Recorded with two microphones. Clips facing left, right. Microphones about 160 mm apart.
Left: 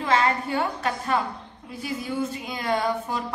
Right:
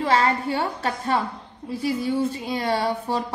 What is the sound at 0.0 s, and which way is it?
A woman's voice, 35° right (ahead or behind).